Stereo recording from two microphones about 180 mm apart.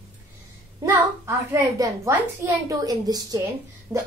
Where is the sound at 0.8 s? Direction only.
15° right (ahead or behind).